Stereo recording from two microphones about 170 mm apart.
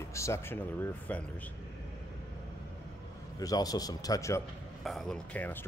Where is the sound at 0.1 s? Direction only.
15° left (ahead or behind).